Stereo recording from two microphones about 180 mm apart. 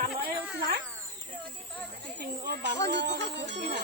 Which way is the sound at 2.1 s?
65° right (ahead or behind).